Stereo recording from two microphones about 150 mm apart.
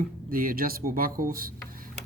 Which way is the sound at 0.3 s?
70° right (ahead or behind).